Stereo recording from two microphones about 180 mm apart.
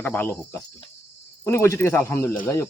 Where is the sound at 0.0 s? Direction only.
10° left (ahead or behind).